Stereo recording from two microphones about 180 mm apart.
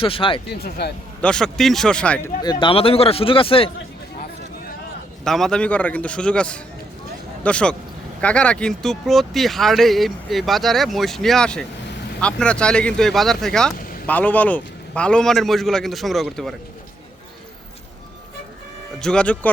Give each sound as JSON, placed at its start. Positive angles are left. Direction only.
{"t": 0.0, "sound": "speech", "side_deg": 30}
{"t": 0.6, "sound": "a man's voice", "side_deg": 65}
{"t": 1.2, "sound": "speech", "side_deg": 5}
{"t": 2.4, "sound": "speech", "side_deg": 25}
{"t": 5.2, "sound": "speech", "side_deg": 0}
{"t": 19.0, "sound": "speech", "side_deg": 5}